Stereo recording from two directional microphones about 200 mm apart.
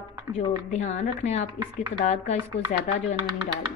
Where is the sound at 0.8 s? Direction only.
35° left (ahead or behind).